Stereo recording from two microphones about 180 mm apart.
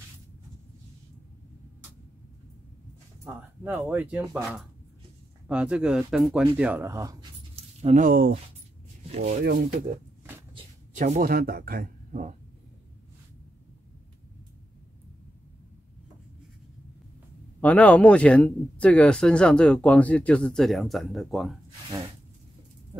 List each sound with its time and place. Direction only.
3.3 s speech: 10° right (ahead or behind)
7.8 s speech: 45° right (ahead or behind)
9.1 s speech: 40° right (ahead or behind)
9.4 s speech: 60° right (ahead or behind)
11.0 s speech: 45° right (ahead or behind)
17.6 s speech: 10° left (ahead or behind)